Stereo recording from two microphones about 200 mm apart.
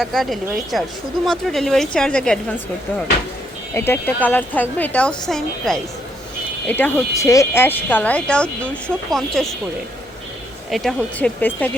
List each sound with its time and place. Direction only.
0.0 s speech: centre (ahead or behind)
3.8 s speech: 10° left (ahead or behind)
10.7 s speech: centre (ahead or behind)